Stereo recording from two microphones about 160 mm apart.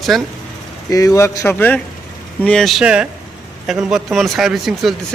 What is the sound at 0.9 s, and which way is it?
A man's voice, 20° left (ahead or behind).